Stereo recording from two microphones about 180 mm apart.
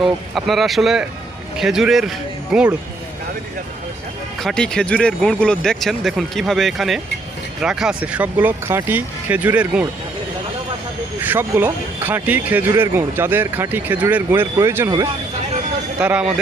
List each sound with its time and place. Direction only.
0.0 s a man's voice: centre (ahead or behind)
4.4 s speech: 5° left (ahead or behind)
11.2 s speech: 10° right (ahead or behind)
16.0 s speech: 5° right (ahead or behind)